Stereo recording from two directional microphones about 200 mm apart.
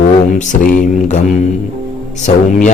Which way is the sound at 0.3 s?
40° left (ahead or behind).